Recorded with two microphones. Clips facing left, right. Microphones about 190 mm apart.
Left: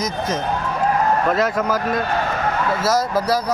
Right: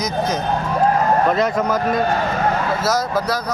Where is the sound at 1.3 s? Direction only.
5° left (ahead or behind).